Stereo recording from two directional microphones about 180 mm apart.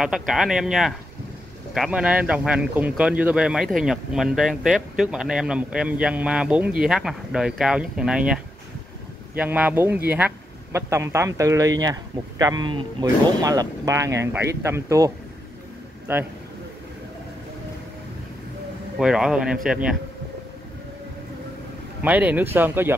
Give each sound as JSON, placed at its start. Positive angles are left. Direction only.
{"t": 0.0, "sound": "speech", "side_deg": 0}
{"t": 18.9, "sound": "speech", "side_deg": -5}
{"t": 22.0, "sound": "speech", "side_deg": -10}